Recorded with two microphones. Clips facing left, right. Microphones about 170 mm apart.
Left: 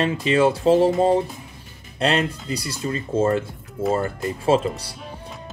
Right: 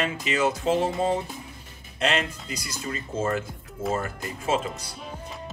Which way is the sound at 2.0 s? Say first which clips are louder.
Left 5 dB; 35° left (ahead or behind).